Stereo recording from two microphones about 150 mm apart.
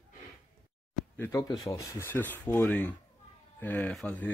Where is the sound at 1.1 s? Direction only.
20° left (ahead or behind).